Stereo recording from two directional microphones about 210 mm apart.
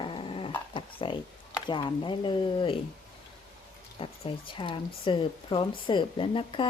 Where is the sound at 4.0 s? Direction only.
25° left (ahead or behind).